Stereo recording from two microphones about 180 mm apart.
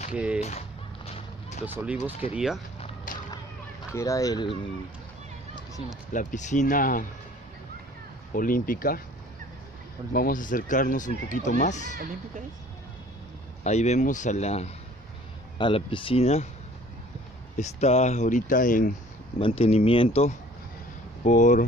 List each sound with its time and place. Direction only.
0.1 s speech: 5° right (ahead or behind)
0.4 s whip: 35° left (ahead or behind)
2.3 s speech: 5° right (ahead or behind)
3.1 s whip: 50° left (ahead or behind)
3.9 s speech: 15° left (ahead or behind)
6.1 s speech: 45° left (ahead or behind)
8.4 s speech: 50° left (ahead or behind)
10.1 s speech: 50° left (ahead or behind)
13.7 s speech: 40° left (ahead or behind)
17.6 s speech: 40° left (ahead or behind)
19.3 s speech: 30° left (ahead or behind)